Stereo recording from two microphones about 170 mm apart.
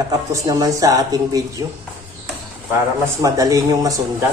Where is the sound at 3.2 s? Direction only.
20° right (ahead or behind).